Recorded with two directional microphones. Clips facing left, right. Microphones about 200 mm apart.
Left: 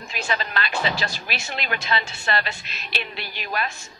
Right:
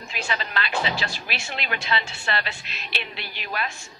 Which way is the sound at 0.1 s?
45° left (ahead or behind).